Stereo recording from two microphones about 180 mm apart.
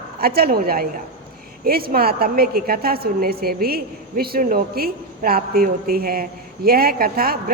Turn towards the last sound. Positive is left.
turn(degrees=-55)  # may be behind; listen again after turning